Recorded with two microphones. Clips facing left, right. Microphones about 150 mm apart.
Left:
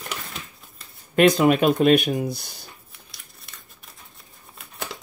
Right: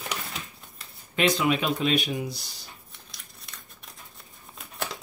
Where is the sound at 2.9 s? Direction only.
Centre (ahead or behind).